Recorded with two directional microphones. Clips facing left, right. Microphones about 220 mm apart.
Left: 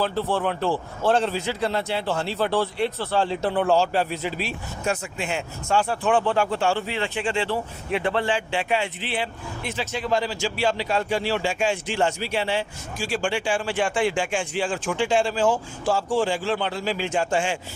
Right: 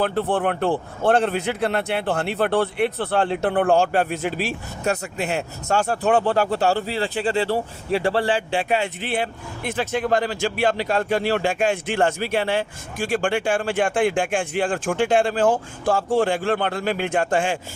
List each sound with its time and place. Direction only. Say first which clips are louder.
0.0 s a man's voice: right 3 dB; 55° right (ahead or behind)